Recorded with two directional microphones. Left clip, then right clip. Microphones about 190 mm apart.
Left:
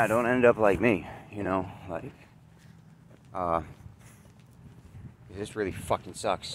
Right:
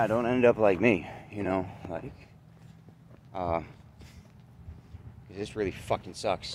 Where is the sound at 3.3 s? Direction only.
Centre (ahead or behind).